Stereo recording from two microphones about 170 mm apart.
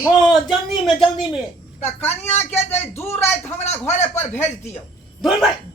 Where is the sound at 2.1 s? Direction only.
40° left (ahead or behind).